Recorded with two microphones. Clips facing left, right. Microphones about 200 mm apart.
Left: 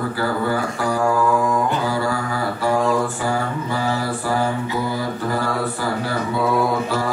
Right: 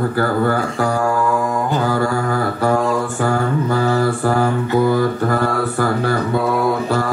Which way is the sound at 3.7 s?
50° right (ahead or behind).